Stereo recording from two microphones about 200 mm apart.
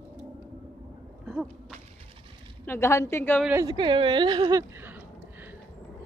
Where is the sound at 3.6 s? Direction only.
20° right (ahead or behind).